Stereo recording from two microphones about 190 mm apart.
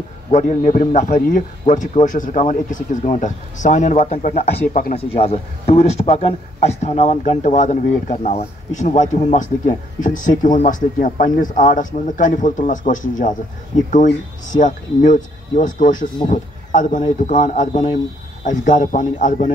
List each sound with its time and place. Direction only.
0.3 s speech: 40° left (ahead or behind)